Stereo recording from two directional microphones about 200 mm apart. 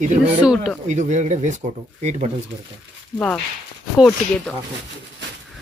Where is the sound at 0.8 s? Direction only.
35° right (ahead or behind).